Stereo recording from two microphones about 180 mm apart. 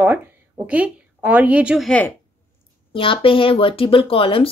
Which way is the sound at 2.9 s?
30° left (ahead or behind).